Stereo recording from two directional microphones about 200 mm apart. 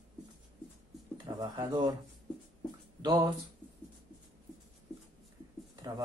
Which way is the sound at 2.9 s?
20° right (ahead or behind).